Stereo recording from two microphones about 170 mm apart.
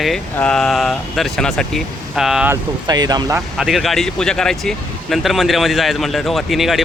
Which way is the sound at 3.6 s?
Centre (ahead or behind).